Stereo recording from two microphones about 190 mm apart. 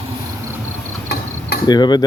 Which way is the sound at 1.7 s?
20° left (ahead or behind).